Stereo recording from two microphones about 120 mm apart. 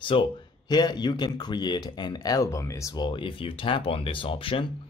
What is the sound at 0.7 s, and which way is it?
Speech, 35° left (ahead or behind).